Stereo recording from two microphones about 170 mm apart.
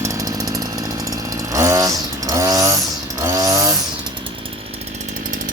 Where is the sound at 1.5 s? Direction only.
20° right (ahead or behind).